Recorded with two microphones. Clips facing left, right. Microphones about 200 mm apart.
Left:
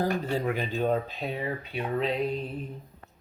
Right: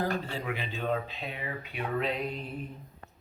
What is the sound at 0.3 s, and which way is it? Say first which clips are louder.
Speech: left 7 dB; 45° left (ahead or behind).